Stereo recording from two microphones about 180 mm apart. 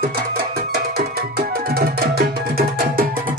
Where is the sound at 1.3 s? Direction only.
60° right (ahead or behind).